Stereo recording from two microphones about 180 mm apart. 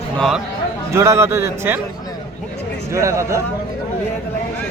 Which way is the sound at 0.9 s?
15° right (ahead or behind).